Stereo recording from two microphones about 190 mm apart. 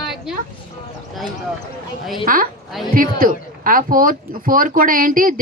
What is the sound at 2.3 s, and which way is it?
Speech, 45° right (ahead or behind).